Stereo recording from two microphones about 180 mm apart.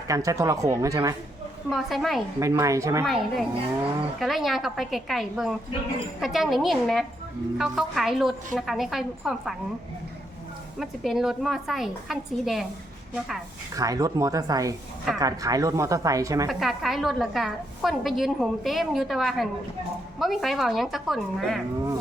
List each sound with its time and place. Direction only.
0.1 s speech: 20° right (ahead or behind)
1.7 s a woman's voice: centre (ahead or behind)
2.4 s speech: 15° right (ahead or behind)
3.0 s a woman's voice: centre (ahead or behind)
10.8 s a woman's voice: centre (ahead or behind)
13.7 s speech: 20° right (ahead or behind)
16.5 s a woman's voice: centre (ahead or behind)